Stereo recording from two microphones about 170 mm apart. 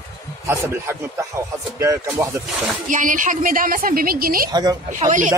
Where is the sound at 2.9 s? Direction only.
50° right (ahead or behind).